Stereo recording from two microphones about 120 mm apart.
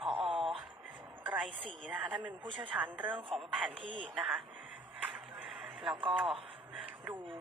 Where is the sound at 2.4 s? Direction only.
45° right (ahead or behind).